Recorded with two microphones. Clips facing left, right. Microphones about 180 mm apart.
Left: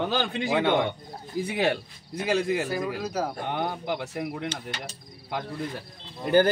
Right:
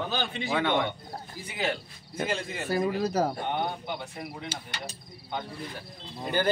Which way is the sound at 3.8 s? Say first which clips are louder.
Left 6 dB; 75° left (ahead or behind).